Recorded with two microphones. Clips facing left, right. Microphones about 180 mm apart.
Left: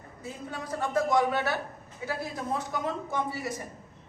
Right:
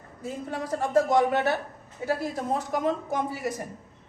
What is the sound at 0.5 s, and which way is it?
Speech, 40° right (ahead or behind).